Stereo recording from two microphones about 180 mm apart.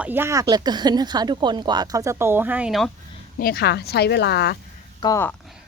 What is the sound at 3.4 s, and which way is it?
Speech, 60° left (ahead or behind).